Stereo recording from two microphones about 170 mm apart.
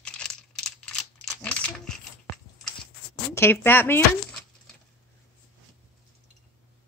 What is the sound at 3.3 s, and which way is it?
Speech, 15° left (ahead or behind).